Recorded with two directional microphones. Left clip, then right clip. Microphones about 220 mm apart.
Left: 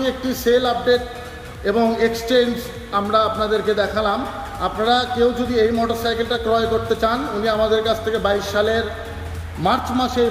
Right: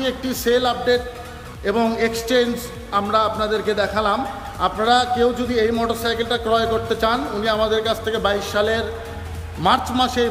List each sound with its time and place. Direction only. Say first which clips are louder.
0.5 s a man's voice: left 1 dB; centre (ahead or behind)